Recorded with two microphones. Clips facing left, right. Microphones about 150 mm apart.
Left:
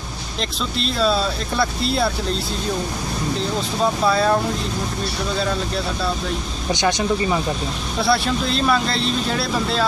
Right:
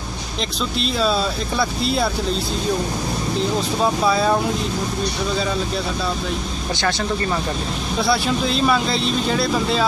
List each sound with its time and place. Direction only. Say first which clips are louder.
0.4 s speech: right 1 dB; centre (ahead or behind)
4.0 s speech: left 1 dB; centre (ahead or behind)
6.7 s speech: left 3 dB; 20° left (ahead or behind)
8.0 s speech: even; centre (ahead or behind)